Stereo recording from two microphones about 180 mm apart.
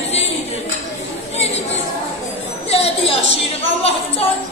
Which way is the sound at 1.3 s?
35° left (ahead or behind).